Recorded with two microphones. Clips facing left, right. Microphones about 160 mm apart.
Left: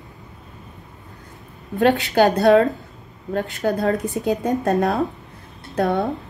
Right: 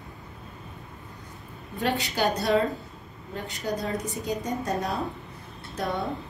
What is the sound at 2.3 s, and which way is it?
Speech, 85° left.